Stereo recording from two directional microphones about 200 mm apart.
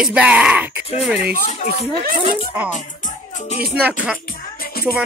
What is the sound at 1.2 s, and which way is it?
Speech, 50° right (ahead or behind).